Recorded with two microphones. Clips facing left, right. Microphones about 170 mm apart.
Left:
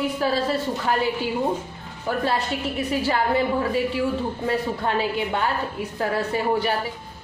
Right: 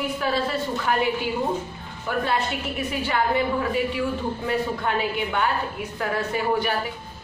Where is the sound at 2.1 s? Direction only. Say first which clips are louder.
Left 1 dB; 35° left (ahead or behind).